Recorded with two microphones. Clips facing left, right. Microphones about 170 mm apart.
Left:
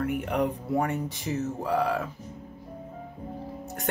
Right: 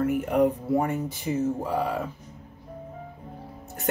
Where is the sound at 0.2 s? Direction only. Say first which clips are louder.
Right 5 dB; centre (ahead or behind).